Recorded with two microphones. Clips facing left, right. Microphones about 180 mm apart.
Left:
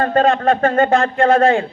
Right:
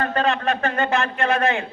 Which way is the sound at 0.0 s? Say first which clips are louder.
Left 7 dB; 45° left (ahead or behind).